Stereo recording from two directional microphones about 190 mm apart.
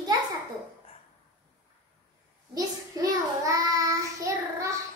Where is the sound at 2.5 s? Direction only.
20° right (ahead or behind).